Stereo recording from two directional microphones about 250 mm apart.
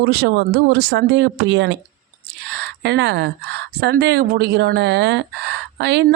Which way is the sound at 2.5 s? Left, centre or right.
Right.